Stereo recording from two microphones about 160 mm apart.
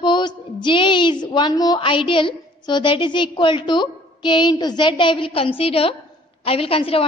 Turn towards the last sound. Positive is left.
turn(degrees=35)  # may be behind; listen again after turning